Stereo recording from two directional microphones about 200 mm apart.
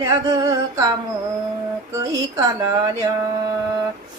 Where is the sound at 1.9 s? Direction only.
15° right (ahead or behind).